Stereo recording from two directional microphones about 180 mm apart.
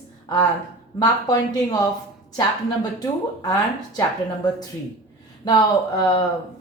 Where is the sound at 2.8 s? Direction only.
20° left (ahead or behind).